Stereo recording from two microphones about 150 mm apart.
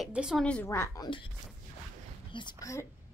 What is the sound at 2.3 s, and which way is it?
Speech, 30° left (ahead or behind).